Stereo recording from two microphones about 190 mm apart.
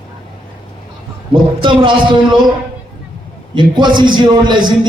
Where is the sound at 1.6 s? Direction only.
25° right (ahead or behind).